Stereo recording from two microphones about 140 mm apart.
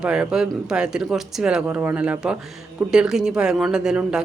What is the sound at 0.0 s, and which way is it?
A man's voice, 5° right (ahead or behind).